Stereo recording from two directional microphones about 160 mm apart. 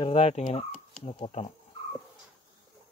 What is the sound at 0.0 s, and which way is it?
Speech, 35° left (ahead or behind).